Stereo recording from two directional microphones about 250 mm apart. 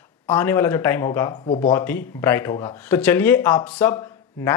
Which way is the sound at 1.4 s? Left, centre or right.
Left.